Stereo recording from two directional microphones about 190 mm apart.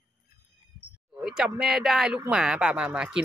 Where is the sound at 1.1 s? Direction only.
5° right (ahead or behind).